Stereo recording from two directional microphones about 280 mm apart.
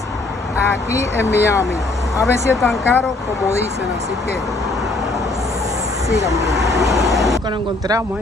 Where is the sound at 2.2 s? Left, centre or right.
Centre.